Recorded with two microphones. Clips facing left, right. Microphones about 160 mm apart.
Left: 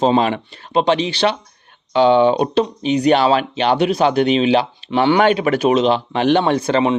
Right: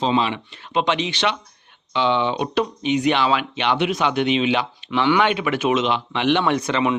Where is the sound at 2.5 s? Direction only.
30° left (ahead or behind).